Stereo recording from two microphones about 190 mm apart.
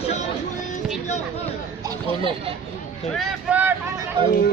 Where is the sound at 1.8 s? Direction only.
25° right (ahead or behind).